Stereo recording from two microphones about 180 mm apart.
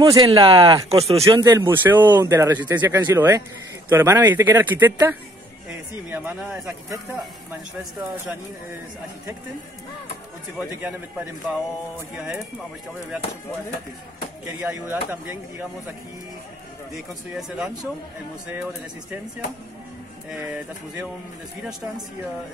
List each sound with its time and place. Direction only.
0.0 s speech: 20° right (ahead or behind)
1.2 s speech: 20° right (ahead or behind)
6.0 s speech: 10° right (ahead or behind)
14.6 s speech: 10° right (ahead or behind)
16.9 s speech: 5° right (ahead or behind)
20.3 s speech: 10° right (ahead or behind)